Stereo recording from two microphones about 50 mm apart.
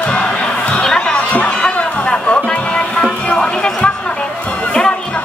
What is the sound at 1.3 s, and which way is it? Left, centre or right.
Music, centre.